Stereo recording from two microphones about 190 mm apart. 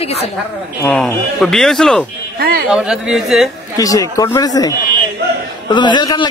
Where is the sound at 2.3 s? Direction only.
55° right (ahead or behind).